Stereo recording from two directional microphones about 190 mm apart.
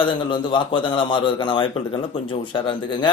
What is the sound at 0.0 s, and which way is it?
A man's voice, 25° left (ahead or behind).